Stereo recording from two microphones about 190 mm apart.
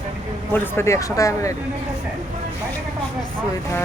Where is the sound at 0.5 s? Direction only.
10° left (ahead or behind).